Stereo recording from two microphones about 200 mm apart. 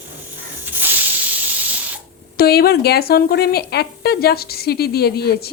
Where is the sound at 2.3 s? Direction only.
50° left (ahead or behind).